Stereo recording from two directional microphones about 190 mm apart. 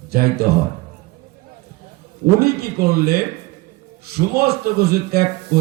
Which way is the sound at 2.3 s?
55° right (ahead or behind).